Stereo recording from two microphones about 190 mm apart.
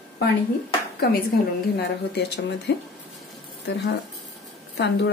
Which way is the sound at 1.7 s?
60° left (ahead or behind).